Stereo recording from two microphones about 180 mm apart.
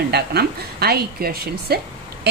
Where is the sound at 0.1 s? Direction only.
60° right (ahead or behind).